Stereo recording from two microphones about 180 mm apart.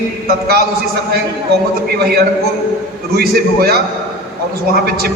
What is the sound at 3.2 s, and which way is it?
A man's voice, 55° right (ahead or behind).